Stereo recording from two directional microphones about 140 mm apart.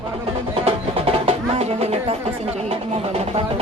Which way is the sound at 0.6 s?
45° right (ahead or behind).